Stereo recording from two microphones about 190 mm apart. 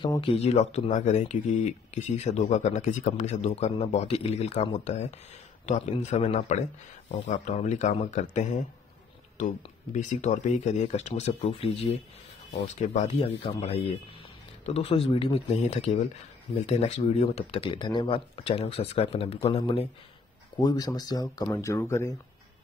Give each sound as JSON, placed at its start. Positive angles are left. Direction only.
{"t": 0.0, "sound": "speech", "side_deg": 25}
{"t": 9.9, "sound": "speech", "side_deg": 40}
{"t": 20.5, "sound": "speech", "side_deg": 20}